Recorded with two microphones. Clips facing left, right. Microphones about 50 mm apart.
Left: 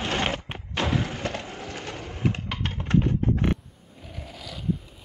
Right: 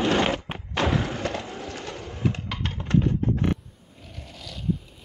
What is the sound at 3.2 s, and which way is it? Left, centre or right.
Creak, left.